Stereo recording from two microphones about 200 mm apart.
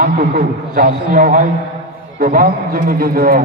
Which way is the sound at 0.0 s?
50° right (ahead or behind).